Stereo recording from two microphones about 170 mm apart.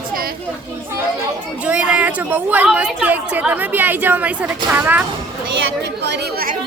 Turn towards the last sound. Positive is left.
turn(degrees=-65)  # may be behind; listen again after turning